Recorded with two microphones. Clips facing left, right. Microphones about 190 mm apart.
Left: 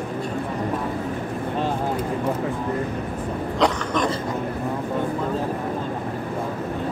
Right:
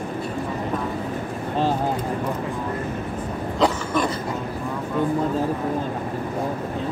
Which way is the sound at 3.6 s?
5° right (ahead or behind).